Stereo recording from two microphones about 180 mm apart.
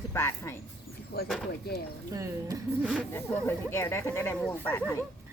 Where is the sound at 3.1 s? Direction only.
10° left (ahead or behind).